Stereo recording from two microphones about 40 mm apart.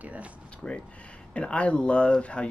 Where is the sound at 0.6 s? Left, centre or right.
Left.